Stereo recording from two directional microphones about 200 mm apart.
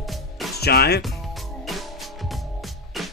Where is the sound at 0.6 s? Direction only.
55° left (ahead or behind).